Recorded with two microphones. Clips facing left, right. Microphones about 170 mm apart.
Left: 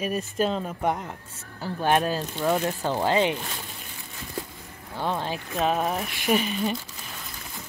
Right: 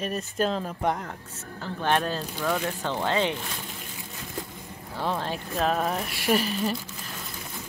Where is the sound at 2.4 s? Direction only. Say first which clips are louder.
Left 4 dB; 20° left (ahead or behind).